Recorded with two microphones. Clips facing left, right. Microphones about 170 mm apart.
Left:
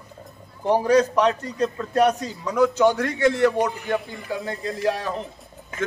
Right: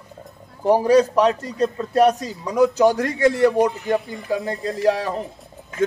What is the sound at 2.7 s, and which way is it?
Speech, 40° right (ahead or behind).